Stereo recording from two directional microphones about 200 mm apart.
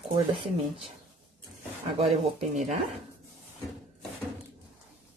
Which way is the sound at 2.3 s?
35° right (ahead or behind).